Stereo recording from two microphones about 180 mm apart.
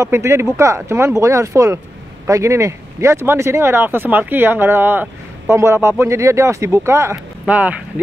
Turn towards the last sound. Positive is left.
turn(degrees=-10)  # may be behind; listen again after turning